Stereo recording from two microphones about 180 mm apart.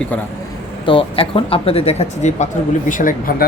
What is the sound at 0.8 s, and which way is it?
Speech, 30° left (ahead or behind).